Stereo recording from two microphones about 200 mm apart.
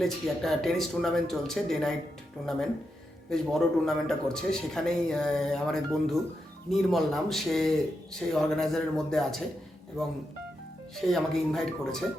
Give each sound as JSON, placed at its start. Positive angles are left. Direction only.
{"t": 0.0, "sound": "a man's voice", "side_deg": 0}
{"t": 3.2, "sound": "a man's voice", "side_deg": 0}
{"t": 10.9, "sound": "a man's voice", "side_deg": 0}